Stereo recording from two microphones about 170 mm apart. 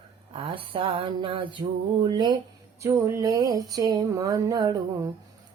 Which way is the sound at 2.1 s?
25° right (ahead or behind).